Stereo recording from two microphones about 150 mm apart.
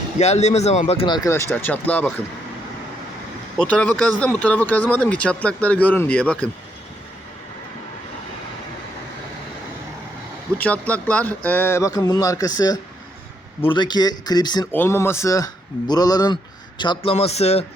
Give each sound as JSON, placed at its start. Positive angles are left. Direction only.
{"t": 0.2, "sound": "speech", "side_deg": 45}
{"t": 1.0, "sound": "speech", "side_deg": 30}
{"t": 1.3, "sound": "speech", "side_deg": 15}
{"t": 3.6, "sound": "speech", "side_deg": 10}
{"t": 10.6, "sound": "speech", "side_deg": 10}
{"t": 14.7, "sound": "a man's voice", "side_deg": 15}